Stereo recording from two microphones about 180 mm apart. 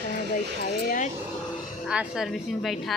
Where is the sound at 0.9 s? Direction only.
45° left (ahead or behind).